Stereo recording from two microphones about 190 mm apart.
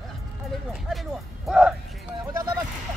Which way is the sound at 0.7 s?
Centre (ahead or behind).